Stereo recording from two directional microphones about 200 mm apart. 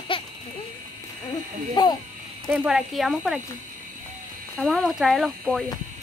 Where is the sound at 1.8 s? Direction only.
20° left (ahead or behind).